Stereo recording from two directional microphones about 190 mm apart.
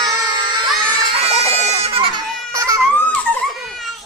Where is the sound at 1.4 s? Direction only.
35° right (ahead or behind).